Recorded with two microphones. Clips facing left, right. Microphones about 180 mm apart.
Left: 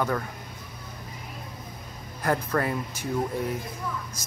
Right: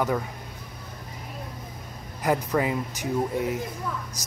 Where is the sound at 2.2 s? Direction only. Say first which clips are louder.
Right 2 dB; 15° right (ahead or behind).